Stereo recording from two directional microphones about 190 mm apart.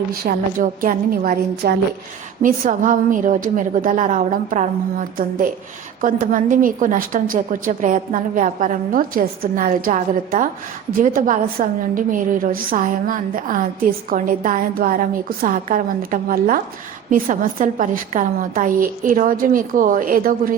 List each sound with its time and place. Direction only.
0.3 s a woman's voice: 45° right (ahead or behind)